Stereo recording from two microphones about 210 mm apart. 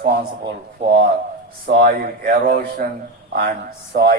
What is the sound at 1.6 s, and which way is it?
Speech, 45° right (ahead or behind).